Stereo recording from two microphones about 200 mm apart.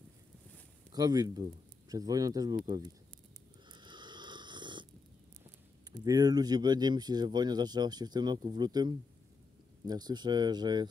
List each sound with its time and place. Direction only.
0.9 s speech: 20° right (ahead or behind)
3.7 s snoring: 20° right (ahead or behind)
6.0 s speech: 20° right (ahead or behind)